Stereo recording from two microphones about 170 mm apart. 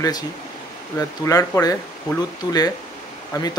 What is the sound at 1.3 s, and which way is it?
Speech, 20° left (ahead or behind).